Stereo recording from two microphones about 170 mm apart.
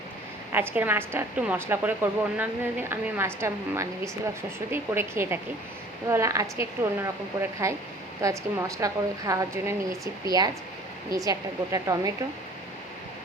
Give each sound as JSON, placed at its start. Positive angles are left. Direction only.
{"t": 0.5, "sound": "a woman's voice", "side_deg": -10}